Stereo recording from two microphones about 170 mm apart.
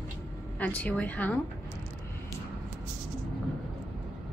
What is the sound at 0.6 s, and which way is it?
Speech, 10° left (ahead or behind).